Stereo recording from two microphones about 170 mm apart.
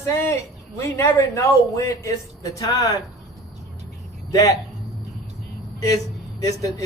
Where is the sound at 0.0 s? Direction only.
15° left (ahead or behind).